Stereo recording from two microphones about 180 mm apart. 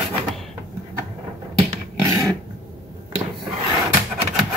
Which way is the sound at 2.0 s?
15° right (ahead or behind).